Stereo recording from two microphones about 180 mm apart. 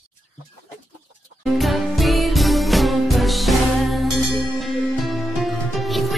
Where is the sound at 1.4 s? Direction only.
Centre (ahead or behind).